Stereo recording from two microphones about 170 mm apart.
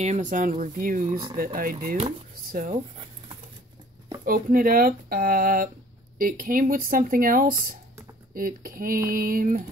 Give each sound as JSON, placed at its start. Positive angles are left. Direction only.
{"t": 0.0, "sound": "speech", "side_deg": -45}
{"t": 4.2, "sound": "speech", "side_deg": -55}